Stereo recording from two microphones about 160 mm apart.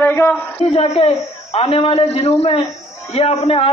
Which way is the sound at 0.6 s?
40° left (ahead or behind).